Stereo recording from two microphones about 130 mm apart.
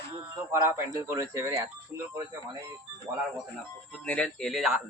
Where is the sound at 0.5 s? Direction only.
20° right (ahead or behind).